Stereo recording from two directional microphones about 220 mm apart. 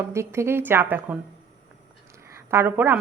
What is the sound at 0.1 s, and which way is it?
A woman's voice, 10° right (ahead or behind).